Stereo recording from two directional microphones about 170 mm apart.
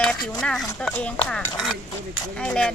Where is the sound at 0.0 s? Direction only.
5° left (ahead or behind).